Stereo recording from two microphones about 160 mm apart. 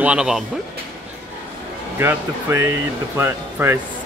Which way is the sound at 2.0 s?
15° right (ahead or behind).